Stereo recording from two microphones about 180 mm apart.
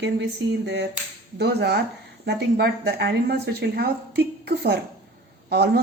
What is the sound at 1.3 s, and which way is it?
Speech, 65° right (ahead or behind).